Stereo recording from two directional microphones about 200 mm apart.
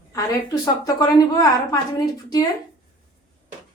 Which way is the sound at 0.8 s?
20° left (ahead or behind).